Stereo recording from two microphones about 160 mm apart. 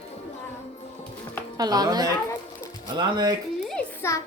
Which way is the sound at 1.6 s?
25° right (ahead or behind).